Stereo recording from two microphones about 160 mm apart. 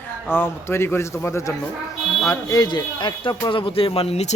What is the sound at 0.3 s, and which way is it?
A man's voice, 15° left (ahead or behind).